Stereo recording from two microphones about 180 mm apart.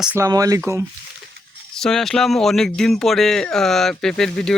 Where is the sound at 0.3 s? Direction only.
20° right (ahead or behind).